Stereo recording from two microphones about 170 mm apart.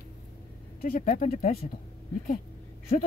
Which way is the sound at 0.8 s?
50° left (ahead or behind).